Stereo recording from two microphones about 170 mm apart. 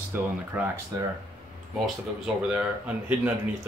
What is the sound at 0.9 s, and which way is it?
Speech, 20° right (ahead or behind).